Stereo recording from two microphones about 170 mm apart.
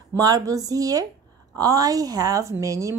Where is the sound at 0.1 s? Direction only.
20° right (ahead or behind).